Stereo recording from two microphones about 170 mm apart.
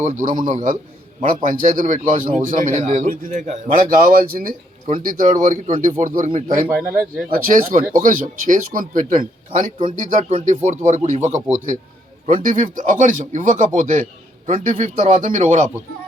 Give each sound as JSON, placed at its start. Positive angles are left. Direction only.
{"t": 0.0, "sound": "a man's voice", "side_deg": -50}
{"t": 6.7, "sound": "speech", "side_deg": -10}
{"t": 7.3, "sound": "a man's voice", "side_deg": -55}
{"t": 9.5, "sound": "speech", "side_deg": -35}
{"t": 9.8, "sound": "a man's voice", "side_deg": -50}